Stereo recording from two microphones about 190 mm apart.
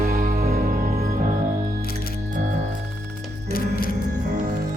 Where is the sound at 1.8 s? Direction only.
55° left (ahead or behind).